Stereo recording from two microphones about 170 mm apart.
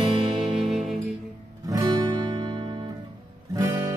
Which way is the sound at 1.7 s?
25° right (ahead or behind).